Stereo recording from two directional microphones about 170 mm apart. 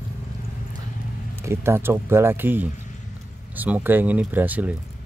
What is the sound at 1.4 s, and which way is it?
Speech, 15° right (ahead or behind).